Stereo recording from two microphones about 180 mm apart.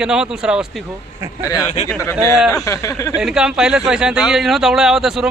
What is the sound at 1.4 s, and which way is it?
Speech, 20° left (ahead or behind).